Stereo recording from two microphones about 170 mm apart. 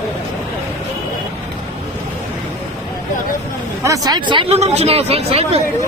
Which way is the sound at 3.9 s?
25° right (ahead or behind).